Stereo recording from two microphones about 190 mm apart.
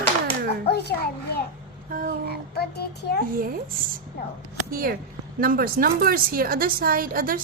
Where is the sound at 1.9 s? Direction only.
50° right (ahead or behind).